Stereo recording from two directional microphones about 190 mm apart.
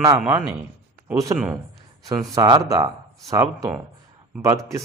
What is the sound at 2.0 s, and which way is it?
Speech, 20° right (ahead or behind).